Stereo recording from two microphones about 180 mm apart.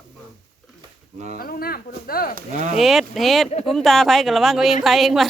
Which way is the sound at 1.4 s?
55° left (ahead or behind).